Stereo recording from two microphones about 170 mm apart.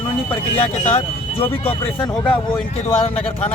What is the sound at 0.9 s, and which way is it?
Speech, 35° left (ahead or behind).